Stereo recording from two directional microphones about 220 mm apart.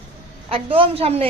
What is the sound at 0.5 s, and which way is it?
Speech, 25° right (ahead or behind).